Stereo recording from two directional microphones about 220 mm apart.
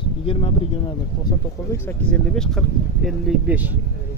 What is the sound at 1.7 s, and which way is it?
Speech, 10° left (ahead or behind).